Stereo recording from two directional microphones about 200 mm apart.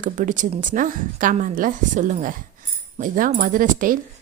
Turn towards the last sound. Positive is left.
turn(degrees=-40)  # may be behind; listen again after turning